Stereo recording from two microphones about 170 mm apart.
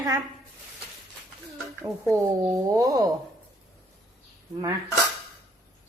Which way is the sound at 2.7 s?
20° right (ahead or behind).